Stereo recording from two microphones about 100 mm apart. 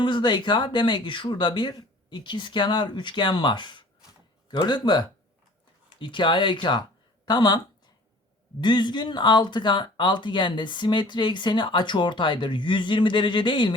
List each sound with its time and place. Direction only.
0.0 s speech: 50° left (ahead or behind)
8.6 s speech: 50° left (ahead or behind)